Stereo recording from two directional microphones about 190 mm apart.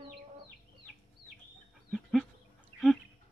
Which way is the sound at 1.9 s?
Centre (ahead or behind).